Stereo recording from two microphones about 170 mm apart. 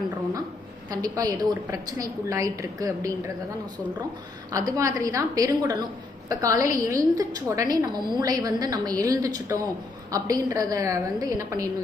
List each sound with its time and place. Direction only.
0.9 s a woman's voice: 20° right (ahead or behind)
4.5 s a woman's voice: 20° right (ahead or behind)